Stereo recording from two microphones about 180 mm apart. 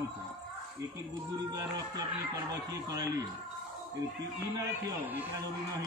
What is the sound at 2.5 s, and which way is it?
Speech, 20° right (ahead or behind).